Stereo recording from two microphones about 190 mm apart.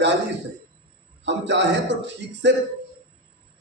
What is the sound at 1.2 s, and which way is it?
A man's voice, 70° right (ahead or behind).